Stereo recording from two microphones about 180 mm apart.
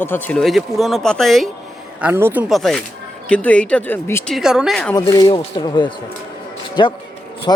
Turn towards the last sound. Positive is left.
turn(degrees=20)  # may be behind; listen again after turning